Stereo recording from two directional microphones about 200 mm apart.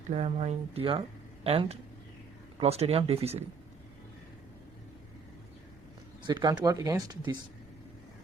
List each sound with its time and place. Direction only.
0.1 s speech: 35° right (ahead or behind)
6.2 s speech: 20° right (ahead or behind)